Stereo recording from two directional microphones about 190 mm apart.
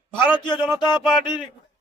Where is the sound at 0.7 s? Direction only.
25° left (ahead or behind).